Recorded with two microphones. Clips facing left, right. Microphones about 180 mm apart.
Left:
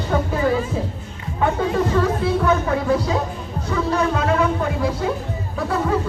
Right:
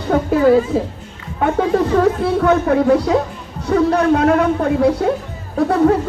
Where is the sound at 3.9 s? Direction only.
60° right (ahead or behind).